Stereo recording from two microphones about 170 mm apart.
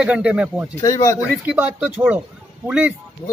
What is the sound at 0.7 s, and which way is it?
Speech, 20° left (ahead or behind).